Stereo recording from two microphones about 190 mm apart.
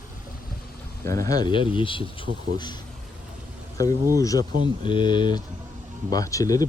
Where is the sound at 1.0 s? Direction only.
15° left (ahead or behind).